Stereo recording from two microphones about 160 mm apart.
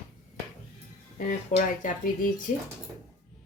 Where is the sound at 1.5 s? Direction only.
55° left (ahead or behind).